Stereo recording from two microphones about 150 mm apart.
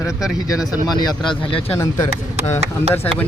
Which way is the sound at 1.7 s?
20° left (ahead or behind).